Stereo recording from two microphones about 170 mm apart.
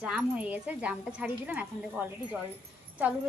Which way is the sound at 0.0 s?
5° right (ahead or behind).